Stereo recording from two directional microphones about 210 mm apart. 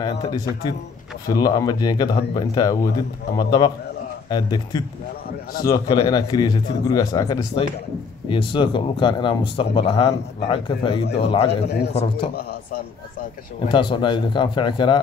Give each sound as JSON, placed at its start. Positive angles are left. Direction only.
{"t": 0.0, "sound": "speech", "side_deg": 20}
{"t": 13.7, "sound": "speech", "side_deg": 20}